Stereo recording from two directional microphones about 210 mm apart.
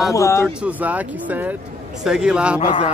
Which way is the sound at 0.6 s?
5° right (ahead or behind).